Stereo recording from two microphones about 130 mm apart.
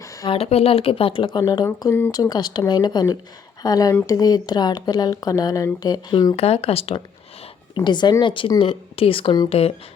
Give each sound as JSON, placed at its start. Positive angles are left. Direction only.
{"t": 0.0, "sound": "a sound", "side_deg": 25}
{"t": 0.3, "sound": "a woman's voice", "side_deg": 50}
{"t": 6.3, "sound": "speech", "side_deg": 50}
{"t": 7.9, "sound": "a woman's voice", "side_deg": 35}